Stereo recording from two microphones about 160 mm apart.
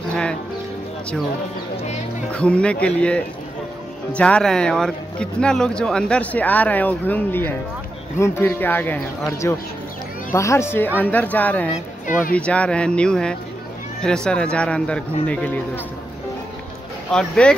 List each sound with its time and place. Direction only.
0.1 s music: 5° left (ahead or behind)
2.3 s speech: 5° left (ahead or behind)
12.1 s speech: 55° left (ahead or behind)
12.4 s speech: 5° left (ahead or behind)
17.1 s speech: 5° left (ahead or behind)